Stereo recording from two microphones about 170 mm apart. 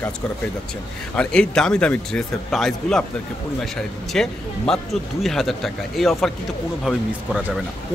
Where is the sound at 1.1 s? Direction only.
5° left (ahead or behind).